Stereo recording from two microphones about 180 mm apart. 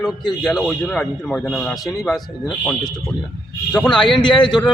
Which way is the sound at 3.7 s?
5° left (ahead or behind).